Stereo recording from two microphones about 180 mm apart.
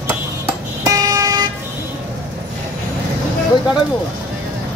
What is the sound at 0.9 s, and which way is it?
Vehicle, 20° right (ahead or behind).